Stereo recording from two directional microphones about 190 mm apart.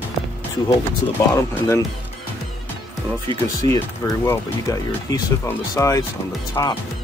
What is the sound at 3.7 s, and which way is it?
Speech, 20° left (ahead or behind).